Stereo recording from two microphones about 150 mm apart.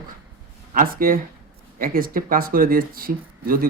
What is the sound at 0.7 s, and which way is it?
Speech, 70° right (ahead or behind).